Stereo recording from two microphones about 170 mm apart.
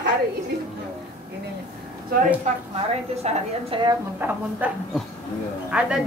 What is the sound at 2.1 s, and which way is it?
Speech, 60° right (ahead or behind).